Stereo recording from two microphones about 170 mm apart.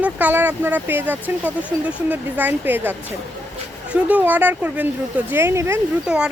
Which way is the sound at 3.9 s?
10° right (ahead or behind).